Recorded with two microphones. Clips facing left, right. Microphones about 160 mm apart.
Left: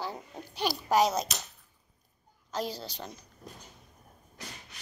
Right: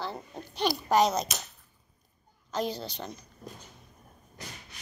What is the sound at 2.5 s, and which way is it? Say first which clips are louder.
Speech: right 3 dB; 5° left (ahead or behind).